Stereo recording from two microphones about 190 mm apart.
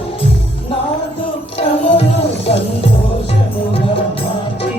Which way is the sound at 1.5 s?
30° left (ahead or behind).